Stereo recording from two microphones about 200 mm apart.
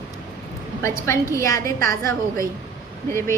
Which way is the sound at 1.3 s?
15° left (ahead or behind).